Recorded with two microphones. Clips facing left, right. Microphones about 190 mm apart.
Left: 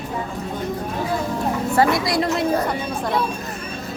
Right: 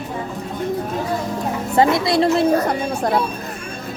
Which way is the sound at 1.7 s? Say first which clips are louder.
Right 4 dB; 25° right (ahead or behind).